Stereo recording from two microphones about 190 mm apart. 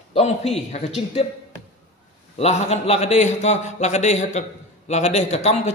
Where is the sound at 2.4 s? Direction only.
35° left (ahead or behind).